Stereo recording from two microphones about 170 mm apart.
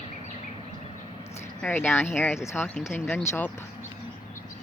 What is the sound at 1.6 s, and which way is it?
Speech, 10° left (ahead or behind).